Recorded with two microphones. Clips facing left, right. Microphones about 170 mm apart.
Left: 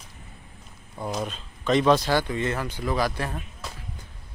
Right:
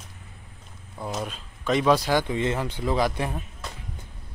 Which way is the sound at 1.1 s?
5° right (ahead or behind).